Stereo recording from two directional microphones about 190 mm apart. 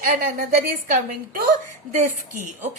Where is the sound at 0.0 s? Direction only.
50° right (ahead or behind).